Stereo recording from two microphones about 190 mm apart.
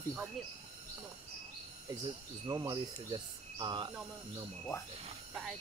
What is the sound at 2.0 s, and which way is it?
Speech, 20° right (ahead or behind).